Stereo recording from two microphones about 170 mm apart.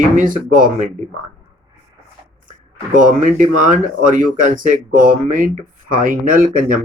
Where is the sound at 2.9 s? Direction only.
50° right (ahead or behind).